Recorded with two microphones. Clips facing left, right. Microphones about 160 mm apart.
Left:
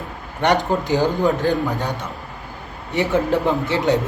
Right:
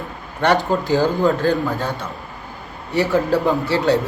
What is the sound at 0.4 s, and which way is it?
A man's voice, 20° left (ahead or behind).